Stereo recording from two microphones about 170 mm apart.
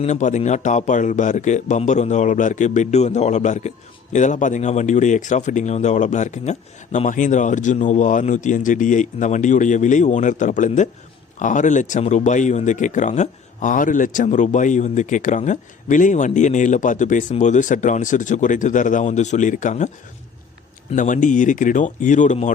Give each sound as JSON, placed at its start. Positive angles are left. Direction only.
{"t": 0.0, "sound": "speech", "side_deg": 45}
{"t": 20.9, "sound": "speech", "side_deg": 50}